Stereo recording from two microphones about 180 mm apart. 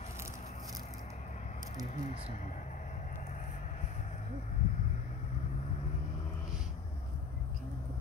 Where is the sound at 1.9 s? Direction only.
40° left (ahead or behind).